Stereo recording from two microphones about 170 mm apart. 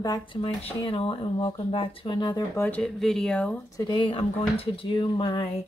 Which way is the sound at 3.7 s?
25° left (ahead or behind).